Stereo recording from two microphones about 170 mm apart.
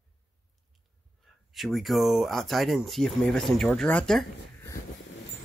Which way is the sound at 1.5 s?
Centre (ahead or behind).